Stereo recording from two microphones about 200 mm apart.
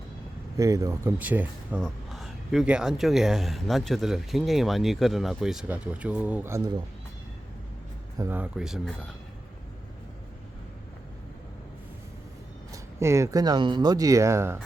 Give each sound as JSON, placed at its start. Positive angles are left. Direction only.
{"t": 0.5, "sound": "speech", "side_deg": -15}
{"t": 8.2, "sound": "speech", "side_deg": -10}
{"t": 12.7, "sound": "speech", "side_deg": -15}